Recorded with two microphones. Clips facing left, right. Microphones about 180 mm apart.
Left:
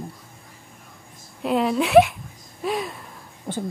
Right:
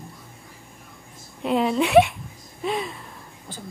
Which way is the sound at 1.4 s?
Centre (ahead or behind).